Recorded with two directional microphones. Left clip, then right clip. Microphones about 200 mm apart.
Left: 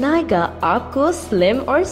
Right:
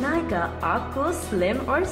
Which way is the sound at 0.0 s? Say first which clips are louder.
Left 8 dB; 45° left (ahead or behind).